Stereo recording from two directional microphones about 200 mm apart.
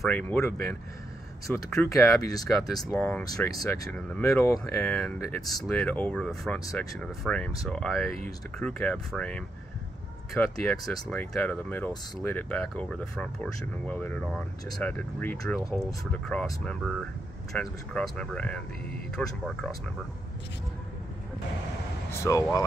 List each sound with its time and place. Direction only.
0.0 s speech: 10° left (ahead or behind)
22.1 s speech: 15° left (ahead or behind)